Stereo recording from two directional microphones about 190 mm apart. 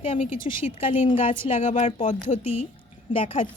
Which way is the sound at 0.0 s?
30° left (ahead or behind).